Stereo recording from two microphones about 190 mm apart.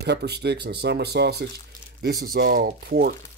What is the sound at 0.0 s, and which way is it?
Speech, 60° right (ahead or behind).